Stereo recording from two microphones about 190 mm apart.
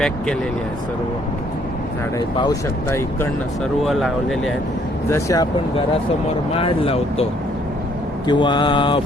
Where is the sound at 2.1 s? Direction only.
20° left (ahead or behind).